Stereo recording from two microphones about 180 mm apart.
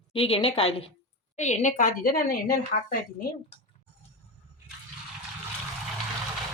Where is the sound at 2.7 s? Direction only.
45° left (ahead or behind).